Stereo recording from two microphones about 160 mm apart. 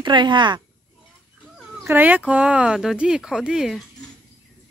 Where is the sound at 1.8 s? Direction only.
10° right (ahead or behind).